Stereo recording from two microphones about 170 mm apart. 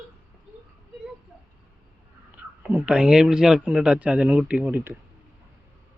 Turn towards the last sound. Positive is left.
turn(degrees=-10)  # may be behind; listen again after turning